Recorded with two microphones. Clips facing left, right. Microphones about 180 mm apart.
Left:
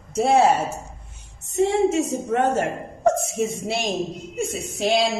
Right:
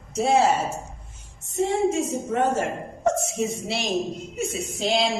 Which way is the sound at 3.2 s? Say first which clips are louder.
Left 2 dB; 55° left (ahead or behind).